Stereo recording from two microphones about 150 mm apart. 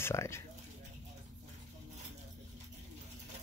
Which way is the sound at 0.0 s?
20° left (ahead or behind).